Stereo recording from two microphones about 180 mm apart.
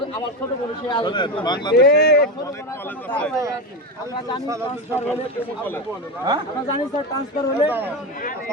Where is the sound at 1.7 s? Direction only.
60° left (ahead or behind).